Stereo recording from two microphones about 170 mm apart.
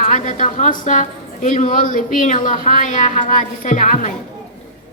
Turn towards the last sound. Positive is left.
turn(degrees=45)  # may be behind; listen again after turning